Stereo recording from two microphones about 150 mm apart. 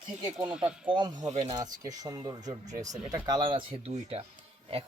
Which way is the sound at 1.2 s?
50° right (ahead or behind).